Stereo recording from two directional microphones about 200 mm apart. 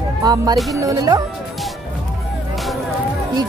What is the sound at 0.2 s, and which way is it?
Music, 20° right (ahead or behind).